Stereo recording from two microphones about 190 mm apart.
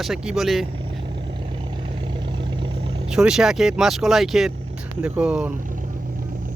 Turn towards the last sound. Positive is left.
turn(degrees=-5)  # may be behind; listen again after turning